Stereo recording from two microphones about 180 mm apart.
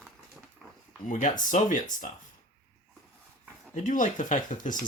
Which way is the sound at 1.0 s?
45° left (ahead or behind).